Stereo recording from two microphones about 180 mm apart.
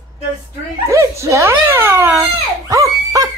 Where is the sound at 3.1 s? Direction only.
20° right (ahead or behind).